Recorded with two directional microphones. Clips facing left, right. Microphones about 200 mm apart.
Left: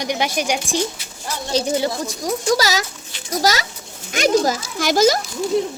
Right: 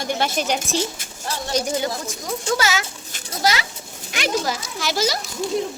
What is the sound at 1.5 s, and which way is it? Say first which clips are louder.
A child's voice: left 4 dB; 30° left (ahead or behind).